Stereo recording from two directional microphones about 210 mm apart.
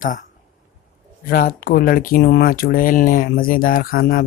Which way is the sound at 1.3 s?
45° left (ahead or behind).